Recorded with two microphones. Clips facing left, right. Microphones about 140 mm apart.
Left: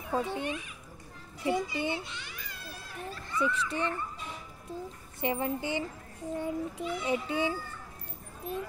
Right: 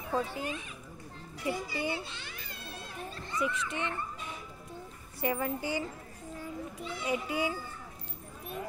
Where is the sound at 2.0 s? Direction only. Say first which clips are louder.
Left 1 dB; 30° right (ahead or behind).